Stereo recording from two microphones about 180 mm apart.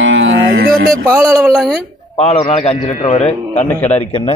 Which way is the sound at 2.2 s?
35° left (ahead or behind).